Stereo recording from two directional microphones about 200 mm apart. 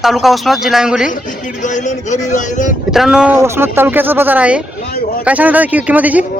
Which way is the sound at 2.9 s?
Centre (ahead or behind).